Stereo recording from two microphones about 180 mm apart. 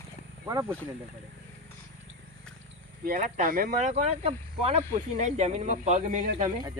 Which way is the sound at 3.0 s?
50° right (ahead or behind).